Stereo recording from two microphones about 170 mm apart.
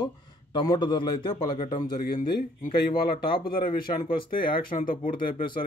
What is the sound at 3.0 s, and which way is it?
Speech, 60° left (ahead or behind).